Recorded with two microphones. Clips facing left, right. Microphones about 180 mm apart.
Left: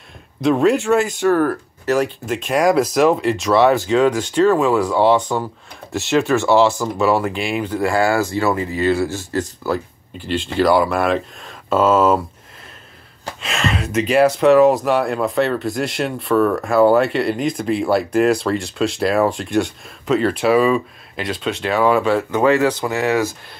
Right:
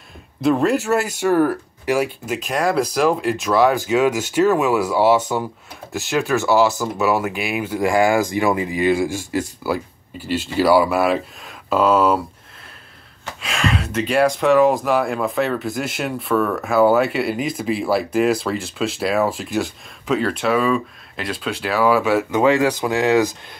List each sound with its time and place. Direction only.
0.4 s speech: centre (ahead or behind)
13.4 s speech: centre (ahead or behind); by 23.3 s 15° right (ahead or behind)